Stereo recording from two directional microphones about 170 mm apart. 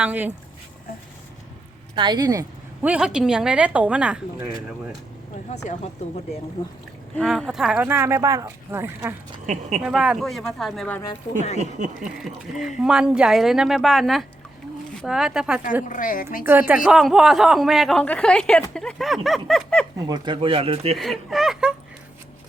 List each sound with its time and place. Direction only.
0.0 s speech: 10° right (ahead or behind)
2.0 s speech: 25° right (ahead or behind)
2.8 s speech: 5° right (ahead or behind)
7.2 s speech: centre (ahead or behind)
9.5 s speech: 45° right (ahead or behind)
9.8 s speech: 5° right (ahead or behind)
11.9 s speech: centre (ahead or behind)
15.9 s a woman's voice: 50° left (ahead or behind)
16.5 s speech: 10° right (ahead or behind)
20.0 s speech: 25° right (ahead or behind)
21.0 s speech: centre (ahead or behind)